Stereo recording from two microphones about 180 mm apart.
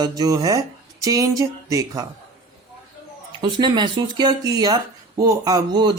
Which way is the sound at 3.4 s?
25° right (ahead or behind).